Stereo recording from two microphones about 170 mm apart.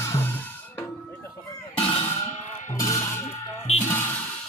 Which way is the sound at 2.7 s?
20° left (ahead or behind).